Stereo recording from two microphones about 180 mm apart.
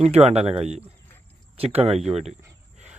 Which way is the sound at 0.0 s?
35° right (ahead or behind).